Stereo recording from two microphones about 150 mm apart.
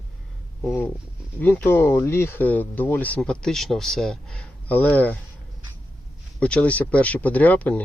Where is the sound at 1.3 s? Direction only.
10° left (ahead or behind).